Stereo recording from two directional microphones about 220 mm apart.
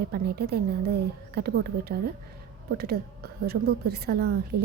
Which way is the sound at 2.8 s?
45° right (ahead or behind).